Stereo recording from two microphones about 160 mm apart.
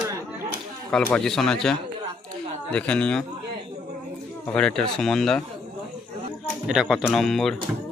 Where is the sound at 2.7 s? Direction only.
10° left (ahead or behind).